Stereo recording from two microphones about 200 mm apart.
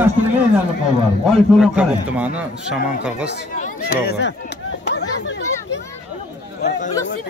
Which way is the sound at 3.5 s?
45° left (ahead or behind).